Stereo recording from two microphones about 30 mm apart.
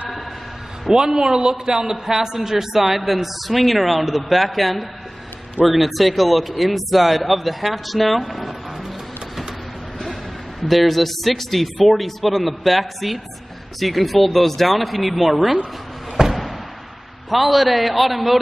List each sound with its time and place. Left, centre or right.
0.9 s a man's voice: right; by 8.4 s centre
8.4 s vehicle: centre
10.7 s speech: centre
16.3 s a sound: centre
17.3 s speech: centre